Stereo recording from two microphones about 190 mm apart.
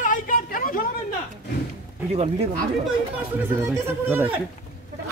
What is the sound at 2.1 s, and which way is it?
Speech, 30° right (ahead or behind).